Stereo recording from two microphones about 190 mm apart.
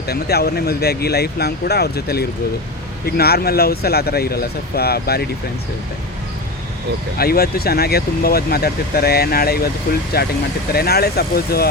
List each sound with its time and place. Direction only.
0.1 s speech: 55° left (ahead or behind)
7.2 s speech: 50° left (ahead or behind)